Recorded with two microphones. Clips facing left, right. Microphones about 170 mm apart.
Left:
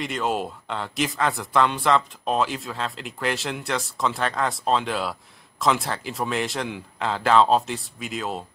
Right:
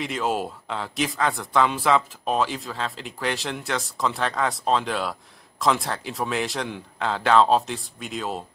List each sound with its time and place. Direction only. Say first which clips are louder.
0.0 s a man's voice: even; centre (ahead or behind)